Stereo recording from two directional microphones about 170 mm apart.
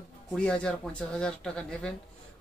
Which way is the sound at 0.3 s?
5° left (ahead or behind).